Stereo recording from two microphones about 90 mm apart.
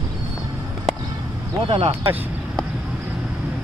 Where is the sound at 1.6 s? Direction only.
85° right.